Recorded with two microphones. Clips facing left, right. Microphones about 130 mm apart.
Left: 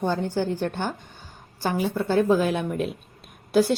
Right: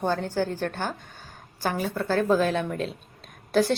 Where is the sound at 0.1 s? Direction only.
15° left (ahead or behind).